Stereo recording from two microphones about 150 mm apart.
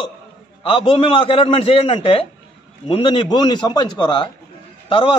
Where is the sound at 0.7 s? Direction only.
35° left (ahead or behind).